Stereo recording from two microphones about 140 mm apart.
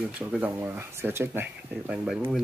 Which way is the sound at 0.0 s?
5° right (ahead or behind).